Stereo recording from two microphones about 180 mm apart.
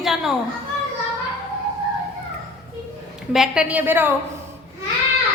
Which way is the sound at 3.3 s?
5° right (ahead or behind).